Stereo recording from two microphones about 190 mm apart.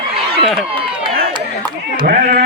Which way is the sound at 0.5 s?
30° right (ahead or behind).